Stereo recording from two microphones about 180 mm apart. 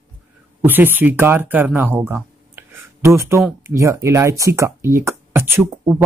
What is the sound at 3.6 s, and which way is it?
Speech, 15° right (ahead or behind).